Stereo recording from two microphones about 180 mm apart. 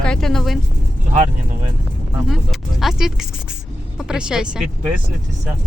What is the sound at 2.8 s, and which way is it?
Speech, centre (ahead or behind).